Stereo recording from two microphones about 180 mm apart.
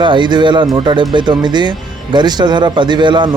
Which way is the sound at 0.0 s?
25° right (ahead or behind).